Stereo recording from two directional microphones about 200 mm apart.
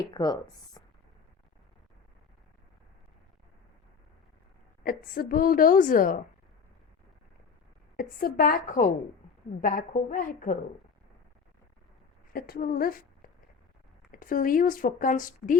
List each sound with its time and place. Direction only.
0.1 s speech: 20° left (ahead or behind)
4.8 s speech: 45° left (ahead or behind)
7.9 s a woman's voice: 45° left (ahead or behind)
12.3 s speech: 50° left (ahead or behind)